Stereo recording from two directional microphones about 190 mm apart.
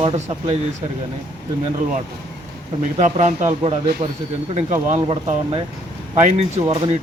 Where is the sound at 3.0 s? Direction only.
40° right (ahead or behind).